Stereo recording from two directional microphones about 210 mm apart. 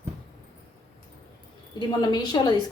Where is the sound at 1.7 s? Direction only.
20° left (ahead or behind).